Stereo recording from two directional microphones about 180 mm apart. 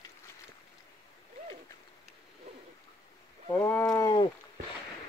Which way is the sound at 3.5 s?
15° left (ahead or behind).